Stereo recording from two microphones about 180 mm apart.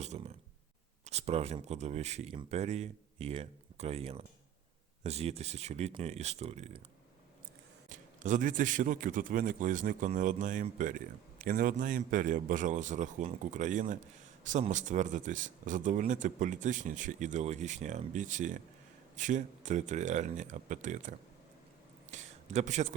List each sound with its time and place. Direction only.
0.0 s speech: 40° right (ahead or behind)
7.9 s a man's voice: 45° right (ahead or behind)